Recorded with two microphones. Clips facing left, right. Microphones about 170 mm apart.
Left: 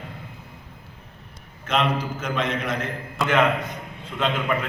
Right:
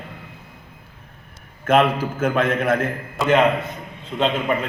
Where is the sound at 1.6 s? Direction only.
50° right (ahead or behind).